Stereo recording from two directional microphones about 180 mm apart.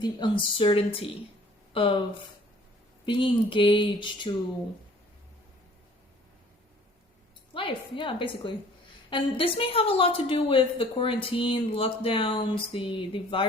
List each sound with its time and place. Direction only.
0.0 s speech: 25° left (ahead or behind)
3.1 s speech: 25° left (ahead or behind)
7.5 s a woman's voice: 30° left (ahead or behind)